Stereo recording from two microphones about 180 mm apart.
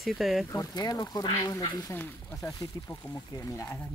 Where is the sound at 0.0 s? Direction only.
Centre (ahead or behind).